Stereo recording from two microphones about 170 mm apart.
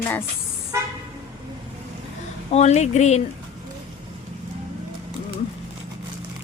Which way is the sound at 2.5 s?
40° left (ahead or behind).